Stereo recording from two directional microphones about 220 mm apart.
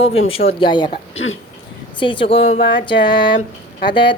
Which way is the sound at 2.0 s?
25° left (ahead or behind).